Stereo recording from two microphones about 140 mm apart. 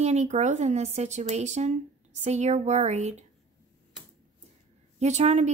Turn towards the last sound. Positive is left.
turn(degrees=-55)  # may be behind; listen again after turning